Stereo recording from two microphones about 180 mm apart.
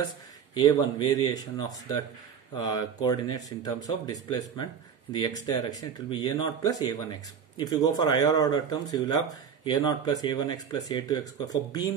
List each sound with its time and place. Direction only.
0.6 s speech: 25° left (ahead or behind)